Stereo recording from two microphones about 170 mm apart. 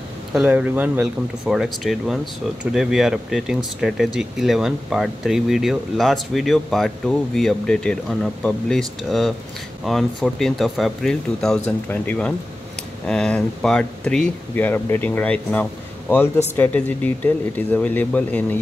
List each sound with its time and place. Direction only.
0.3 s speech: 5° right (ahead or behind); by 18.6 s 10° left (ahead or behind)